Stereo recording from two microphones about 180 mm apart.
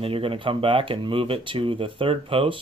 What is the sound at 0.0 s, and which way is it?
Speech, 30° right (ahead or behind).